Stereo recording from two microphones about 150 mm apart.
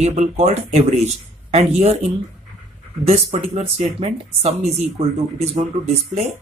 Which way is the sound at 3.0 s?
45° right (ahead or behind).